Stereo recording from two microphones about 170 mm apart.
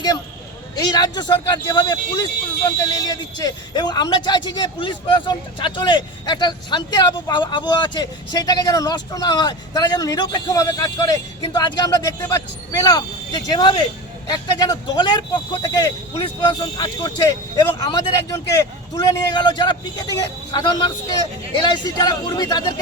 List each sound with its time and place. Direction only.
0.9 s speech: 25° left (ahead or behind)